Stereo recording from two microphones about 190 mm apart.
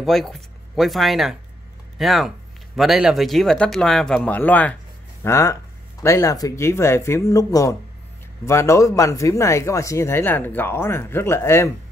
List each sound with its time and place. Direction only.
0.0 s speech: centre (ahead or behind)